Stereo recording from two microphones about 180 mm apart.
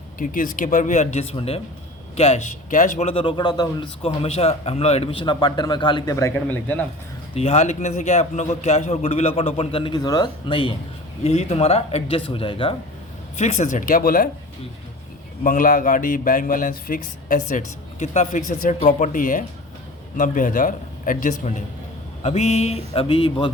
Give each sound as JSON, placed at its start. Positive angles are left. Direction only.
{"t": 0.2, "sound": "a man's voice", "side_deg": 50}
{"t": 7.3, "sound": "a man's voice", "side_deg": 35}
{"t": 11.2, "sound": "a man's voice", "side_deg": 35}
{"t": 13.3, "sound": "speech", "side_deg": 40}
{"t": 15.4, "sound": "a man's voice", "side_deg": 50}